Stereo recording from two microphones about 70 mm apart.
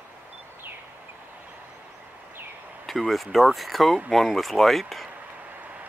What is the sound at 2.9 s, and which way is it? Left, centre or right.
Speech, centre.